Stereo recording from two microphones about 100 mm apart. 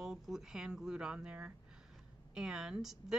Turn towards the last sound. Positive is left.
turn(degrees=-5)  # may be behind; listen again after turning